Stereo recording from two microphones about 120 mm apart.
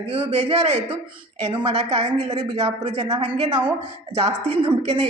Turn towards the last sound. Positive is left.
turn(degrees=-55)  # may be behind; listen again after turning